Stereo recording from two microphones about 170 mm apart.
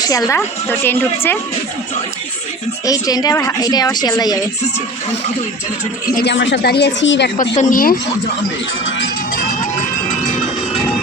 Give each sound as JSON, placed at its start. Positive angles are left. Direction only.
{"t": 0.0, "sound": "a woman's voice", "side_deg": 20}
{"t": 2.8, "sound": "a woman's voice", "side_deg": 20}
{"t": 6.2, "sound": "speech", "side_deg": 90}
{"t": 7.3, "sound": "speech", "side_deg": 50}